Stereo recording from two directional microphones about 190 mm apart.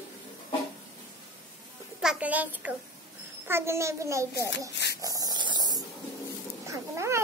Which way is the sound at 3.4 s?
15° right (ahead or behind).